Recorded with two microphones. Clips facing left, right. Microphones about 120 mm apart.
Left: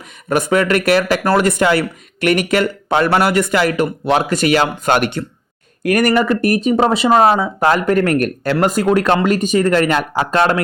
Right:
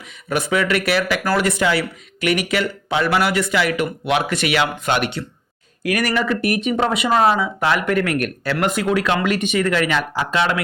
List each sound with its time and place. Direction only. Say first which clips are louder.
0.3 s speech: left 5 dB; 50° left (ahead or behind); by 7.3 s 30° left (ahead or behind)
7.3 s speech: left 4 dB; 40° left (ahead or behind)